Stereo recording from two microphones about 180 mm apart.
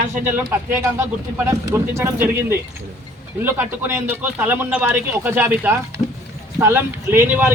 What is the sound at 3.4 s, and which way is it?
A man's voice, 10° right (ahead or behind).